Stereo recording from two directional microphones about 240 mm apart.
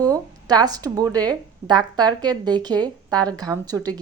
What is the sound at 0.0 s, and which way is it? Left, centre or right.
Speech, centre.